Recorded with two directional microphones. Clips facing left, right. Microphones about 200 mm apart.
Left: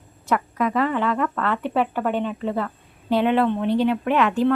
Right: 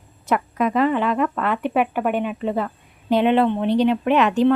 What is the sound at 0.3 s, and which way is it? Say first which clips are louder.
Speech: right 2 dB; 20° right (ahead or behind).